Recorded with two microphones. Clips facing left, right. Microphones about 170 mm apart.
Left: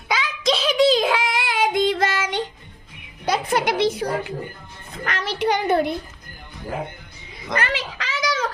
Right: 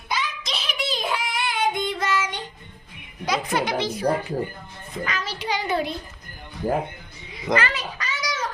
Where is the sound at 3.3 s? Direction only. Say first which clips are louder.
Left 3 dB; 65° left (ahead or behind).